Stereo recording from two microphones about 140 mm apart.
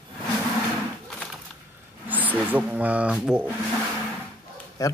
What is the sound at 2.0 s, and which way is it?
Speech, 10° right (ahead or behind).